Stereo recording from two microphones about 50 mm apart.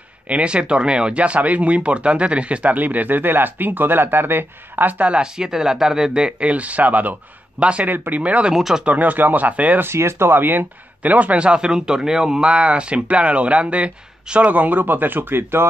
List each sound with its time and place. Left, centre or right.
0.3 s speech: right
5.1 s speech: centre
7.9 s speech: right
8.2 s speech: right
8.5 s speech: centre
8.8 s speech: right
9.8 s speech: right